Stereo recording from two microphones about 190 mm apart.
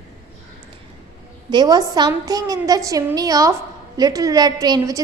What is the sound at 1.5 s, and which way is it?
A woman's voice, 20° right (ahead or behind).